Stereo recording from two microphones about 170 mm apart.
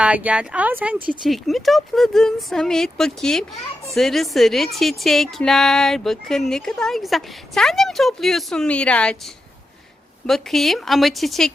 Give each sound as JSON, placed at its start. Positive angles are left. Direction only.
{"t": 0.0, "sound": "a woman's voice", "side_deg": -10}